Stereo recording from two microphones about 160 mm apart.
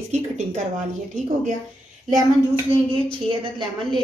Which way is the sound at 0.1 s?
45° right (ahead or behind).